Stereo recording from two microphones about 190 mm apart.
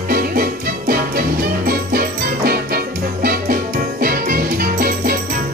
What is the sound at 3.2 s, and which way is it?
Music, 50° right (ahead or behind).